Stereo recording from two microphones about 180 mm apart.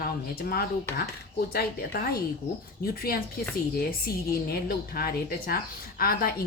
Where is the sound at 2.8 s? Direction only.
55° left (ahead or behind).